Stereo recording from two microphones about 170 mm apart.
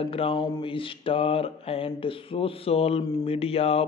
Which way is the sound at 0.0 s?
35° left (ahead or behind).